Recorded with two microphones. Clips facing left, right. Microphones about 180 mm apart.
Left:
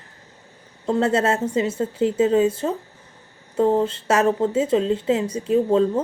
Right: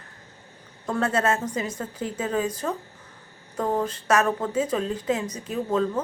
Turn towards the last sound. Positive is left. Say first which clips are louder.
# left 7 dB
turn(degrees=30)  # may be behind; listen again after turning